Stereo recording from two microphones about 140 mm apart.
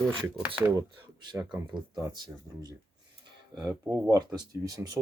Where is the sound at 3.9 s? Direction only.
25° right (ahead or behind).